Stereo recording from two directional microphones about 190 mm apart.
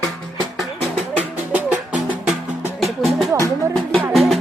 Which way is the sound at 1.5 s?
5° right (ahead or behind).